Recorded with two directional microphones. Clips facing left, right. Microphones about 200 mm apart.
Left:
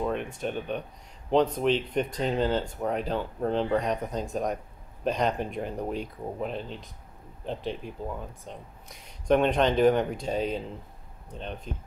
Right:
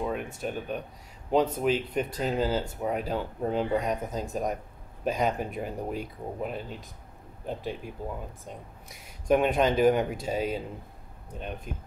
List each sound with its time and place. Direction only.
0.0 s speech: 5° right (ahead or behind)